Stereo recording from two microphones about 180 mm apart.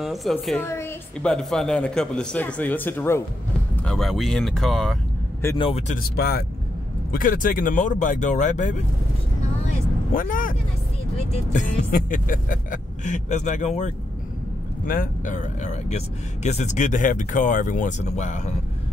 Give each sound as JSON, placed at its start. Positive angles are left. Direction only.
{"t": 0.0, "sound": "speech", "side_deg": 0}
{"t": 0.7, "sound": "speech", "side_deg": 15}
{"t": 1.3, "sound": "speech", "side_deg": 5}
{"t": 3.8, "sound": "speech", "side_deg": 0}
{"t": 5.6, "sound": "speech", "side_deg": 35}
{"t": 6.1, "sound": "speech", "side_deg": 60}
{"t": 7.1, "sound": "speech", "side_deg": 50}
{"t": 10.1, "sound": "speech", "side_deg": 50}
{"t": 11.5, "sound": "speech", "side_deg": 45}